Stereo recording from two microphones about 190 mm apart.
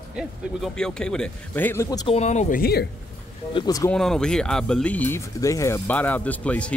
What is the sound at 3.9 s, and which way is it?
Speech, 5° left (ahead or behind).